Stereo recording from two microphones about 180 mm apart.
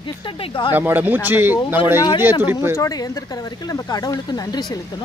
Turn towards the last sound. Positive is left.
turn(degrees=20)  # may be behind; listen again after turning